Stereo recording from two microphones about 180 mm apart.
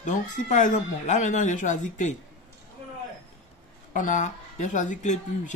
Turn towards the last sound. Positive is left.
turn(degrees=45)  # may be behind; listen again after turning